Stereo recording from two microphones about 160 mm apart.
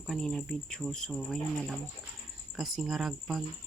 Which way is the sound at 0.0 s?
Centre (ahead or behind).